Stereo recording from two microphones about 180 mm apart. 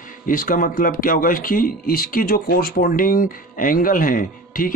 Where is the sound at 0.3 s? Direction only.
50° left (ahead or behind).